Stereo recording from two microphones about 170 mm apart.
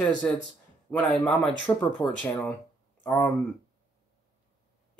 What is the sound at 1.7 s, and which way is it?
Speech, 20° left (ahead or behind).